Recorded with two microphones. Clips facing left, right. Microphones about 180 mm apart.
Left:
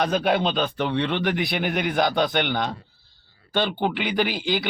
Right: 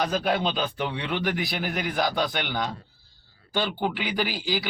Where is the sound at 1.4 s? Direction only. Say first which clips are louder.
Left 4 dB; 65° left (ahead or behind).